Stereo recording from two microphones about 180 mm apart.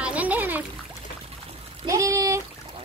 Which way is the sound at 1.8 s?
15° right (ahead or behind).